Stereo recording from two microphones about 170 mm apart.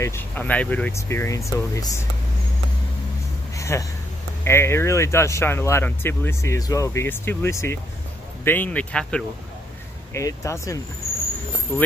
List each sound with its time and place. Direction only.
0.0 s speech: 15° left (ahead or behind)
3.5 s a sound: 15° left (ahead or behind)
4.5 s speech: 15° left (ahead or behind)
10.1 s speech: 20° left (ahead or behind)